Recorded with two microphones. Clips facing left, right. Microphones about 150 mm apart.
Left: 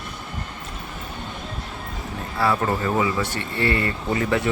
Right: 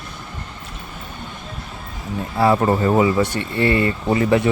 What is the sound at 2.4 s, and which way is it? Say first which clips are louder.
Speech: right 6 dB; 25° right (ahead or behind).